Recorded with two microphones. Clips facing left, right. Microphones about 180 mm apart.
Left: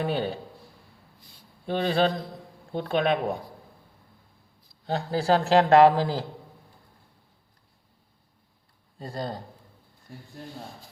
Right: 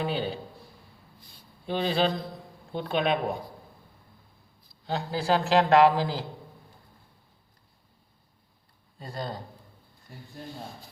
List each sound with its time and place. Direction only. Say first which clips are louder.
0.0 s a man's voice: left 2 dB; 50° left (ahead or behind)
1.6 s a man's voice: left 2 dB; 50° left (ahead or behind)
4.9 s a man's voice: left 3 dB; 45° left (ahead or behind)
9.0 s speech: left 2 dB; 40° left (ahead or behind)